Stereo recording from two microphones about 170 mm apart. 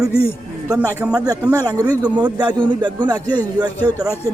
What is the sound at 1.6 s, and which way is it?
A man's voice, 20° right (ahead or behind).